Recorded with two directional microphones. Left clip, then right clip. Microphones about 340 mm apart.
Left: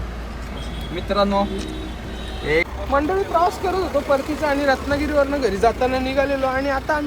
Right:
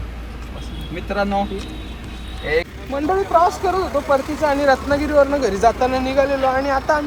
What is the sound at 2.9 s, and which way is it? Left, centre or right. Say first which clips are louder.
Speech: right 2 dB; centre.